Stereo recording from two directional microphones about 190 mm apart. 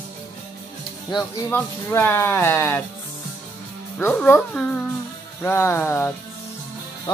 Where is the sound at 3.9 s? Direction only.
5° left (ahead or behind).